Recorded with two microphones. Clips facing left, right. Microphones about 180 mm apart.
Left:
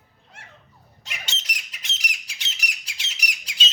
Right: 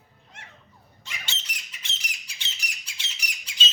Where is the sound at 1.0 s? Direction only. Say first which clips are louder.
Left 3 dB; 75° left (ahead or behind).